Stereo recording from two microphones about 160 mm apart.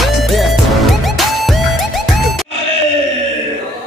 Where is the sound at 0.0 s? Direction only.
Centre (ahead or behind).